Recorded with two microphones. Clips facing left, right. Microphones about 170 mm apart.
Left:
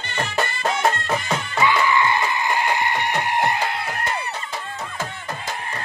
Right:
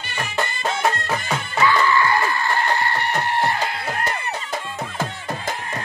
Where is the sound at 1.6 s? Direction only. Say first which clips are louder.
Right 1 dB; 15° left (ahead or behind).